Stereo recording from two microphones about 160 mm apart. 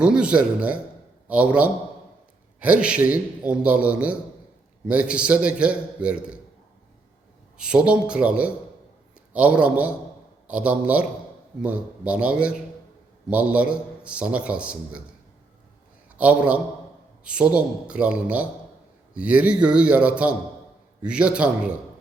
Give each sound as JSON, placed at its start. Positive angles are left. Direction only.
{"t": 0.0, "sound": "a man's voice", "side_deg": -5}
{"t": 2.8, "sound": "a man's voice", "side_deg": -10}
{"t": 7.6, "sound": "a man's voice", "side_deg": -5}
{"t": 16.1, "sound": "a man's voice", "side_deg": -10}